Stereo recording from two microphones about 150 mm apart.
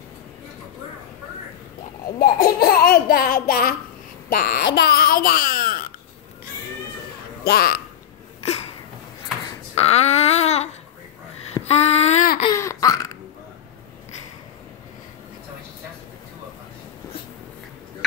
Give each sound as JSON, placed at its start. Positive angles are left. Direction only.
{"t": 2.1, "sound": "speech", "side_deg": 80}
{"t": 7.4, "sound": "speech", "side_deg": 80}
{"t": 9.8, "sound": "babbling", "side_deg": 45}
{"t": 11.6, "sound": "child singing", "side_deg": 45}
{"t": 12.4, "sound": "laughter", "side_deg": 20}